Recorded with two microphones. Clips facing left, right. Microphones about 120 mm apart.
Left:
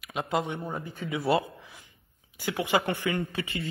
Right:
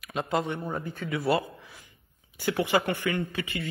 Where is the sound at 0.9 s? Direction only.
20° left (ahead or behind).